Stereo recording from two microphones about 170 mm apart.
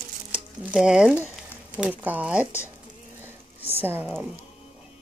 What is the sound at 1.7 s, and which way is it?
Speech, 5° right (ahead or behind).